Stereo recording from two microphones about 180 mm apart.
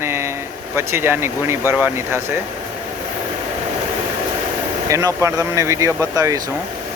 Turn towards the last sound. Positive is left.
turn(degrees=-15)  # may be behind; listen again after turning